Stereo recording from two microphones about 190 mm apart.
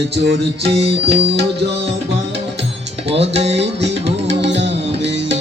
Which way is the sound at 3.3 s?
35° right (ahead or behind).